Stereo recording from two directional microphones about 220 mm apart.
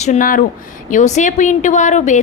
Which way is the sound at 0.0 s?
35° left (ahead or behind).